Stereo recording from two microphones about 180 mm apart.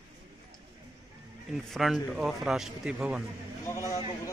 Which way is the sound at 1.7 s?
Centre (ahead or behind).